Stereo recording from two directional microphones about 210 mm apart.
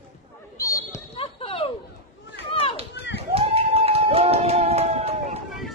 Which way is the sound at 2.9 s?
55° left (ahead or behind).